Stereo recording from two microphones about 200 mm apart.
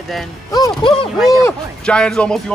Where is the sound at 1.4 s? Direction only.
5° left (ahead or behind).